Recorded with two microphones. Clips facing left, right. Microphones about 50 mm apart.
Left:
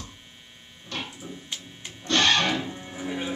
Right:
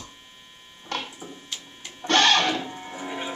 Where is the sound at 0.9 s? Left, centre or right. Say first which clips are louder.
Right 3 dB; right.